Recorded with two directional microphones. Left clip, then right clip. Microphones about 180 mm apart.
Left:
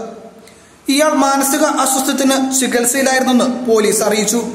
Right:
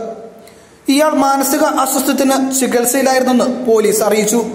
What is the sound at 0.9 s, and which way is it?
A man's voice, 10° right (ahead or behind).